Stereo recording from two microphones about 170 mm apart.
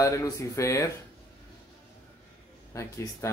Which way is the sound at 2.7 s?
20° left (ahead or behind).